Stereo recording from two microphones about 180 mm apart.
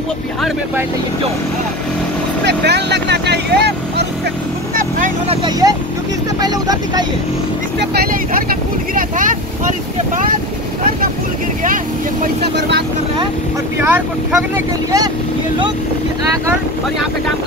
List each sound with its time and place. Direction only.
2.4 s vehicle: 70° right (ahead or behind)
5.3 s speech: 25° right (ahead or behind)
7.8 s speech: 60° right (ahead or behind)
12.5 s speech: 70° right (ahead or behind)
13.7 s speech: 10° right (ahead or behind)